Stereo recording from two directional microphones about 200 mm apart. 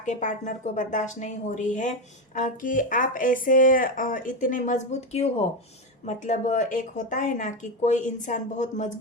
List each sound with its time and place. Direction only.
0.0 s speech: 40° left (ahead or behind)